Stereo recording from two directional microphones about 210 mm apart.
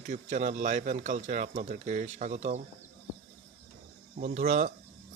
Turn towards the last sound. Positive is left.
turn(degrees=-35)  # may be behind; listen again after turning